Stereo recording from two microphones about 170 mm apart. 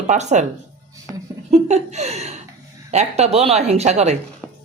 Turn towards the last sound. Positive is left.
turn(degrees=-40)  # may be behind; listen again after turning